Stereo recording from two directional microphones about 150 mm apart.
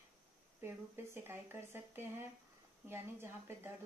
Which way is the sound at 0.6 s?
15° right (ahead or behind).